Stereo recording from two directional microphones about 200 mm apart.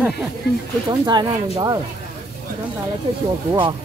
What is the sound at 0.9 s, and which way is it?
Speech, 20° right (ahead or behind).